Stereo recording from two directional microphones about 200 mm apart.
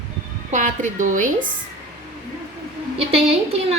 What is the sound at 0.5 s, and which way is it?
Speech, 40° right (ahead or behind).